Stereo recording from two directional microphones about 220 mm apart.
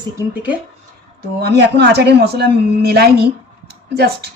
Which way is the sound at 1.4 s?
50° right (ahead or behind).